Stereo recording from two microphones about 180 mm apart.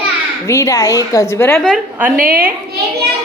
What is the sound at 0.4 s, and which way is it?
A woman's voice, 15° left (ahead or behind).